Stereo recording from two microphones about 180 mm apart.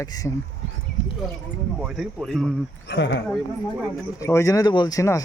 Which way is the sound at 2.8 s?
75° left (ahead or behind).